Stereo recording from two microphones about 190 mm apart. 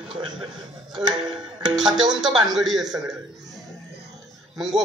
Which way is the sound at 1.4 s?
20° right (ahead or behind).